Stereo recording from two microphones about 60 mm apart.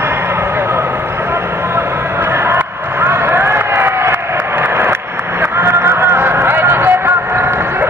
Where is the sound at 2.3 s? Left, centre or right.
Right.